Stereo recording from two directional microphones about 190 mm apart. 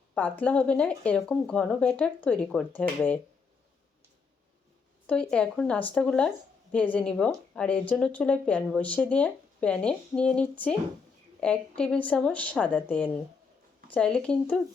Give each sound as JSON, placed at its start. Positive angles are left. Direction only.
{"t": 0.1, "sound": "speech", "side_deg": 5}
{"t": 5.0, "sound": "a woman's voice", "side_deg": 5}